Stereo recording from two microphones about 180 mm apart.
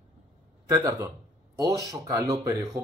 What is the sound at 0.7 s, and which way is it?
Speech, 20° right (ahead or behind).